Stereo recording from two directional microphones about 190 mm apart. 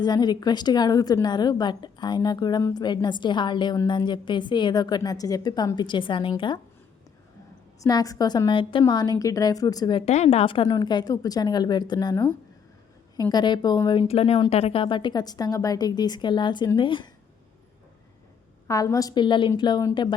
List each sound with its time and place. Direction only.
0.0 s a woman's voice: 20° left (ahead or behind)
7.8 s a woman's voice: 20° left (ahead or behind)
10.1 s a woman's voice: 35° left (ahead or behind); by 12.3 s 20° left (ahead or behind)
13.3 s a woman's voice: 20° left (ahead or behind)
18.7 s a woman's voice: 20° left (ahead or behind)